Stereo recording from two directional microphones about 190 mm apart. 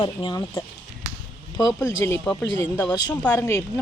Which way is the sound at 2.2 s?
5° left (ahead or behind).